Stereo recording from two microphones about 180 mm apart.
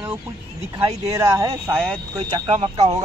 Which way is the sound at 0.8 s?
20° right (ahead or behind).